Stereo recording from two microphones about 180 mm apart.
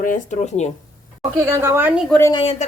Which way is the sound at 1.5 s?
15° right (ahead or behind).